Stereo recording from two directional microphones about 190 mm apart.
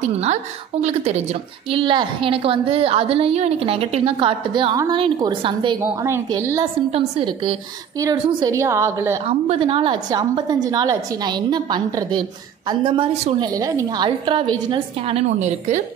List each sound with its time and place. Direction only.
0.0 s a woman's voice: 35° right (ahead or behind)
5.8 s a woman's voice: 15° right (ahead or behind)
6.9 s a woman's voice: 30° right (ahead or behind); by 9.2 s 15° right (ahead or behind)
9.3 s a woman's voice: 30° right (ahead or behind)
13.4 s a woman's voice: 20° right (ahead or behind); by 15.8 s 40° right (ahead or behind)